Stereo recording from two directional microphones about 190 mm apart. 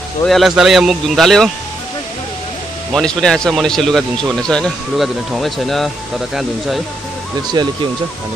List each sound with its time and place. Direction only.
0.2 s speech: centre (ahead or behind)
2.9 s speech: 5° left (ahead or behind)
7.6 s speech: 25° right (ahead or behind)